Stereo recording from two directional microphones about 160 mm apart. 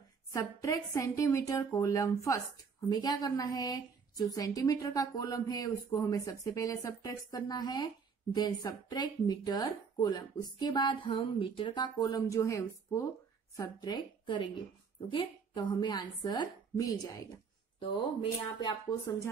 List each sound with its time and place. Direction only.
0.3 s speech: 20° left (ahead or behind)